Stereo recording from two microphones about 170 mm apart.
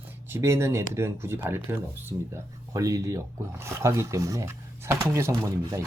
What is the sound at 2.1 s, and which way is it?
Speech, 30° right (ahead or behind).